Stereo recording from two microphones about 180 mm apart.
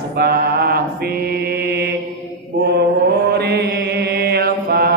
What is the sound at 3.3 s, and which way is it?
Mantra, 65° right (ahead or behind).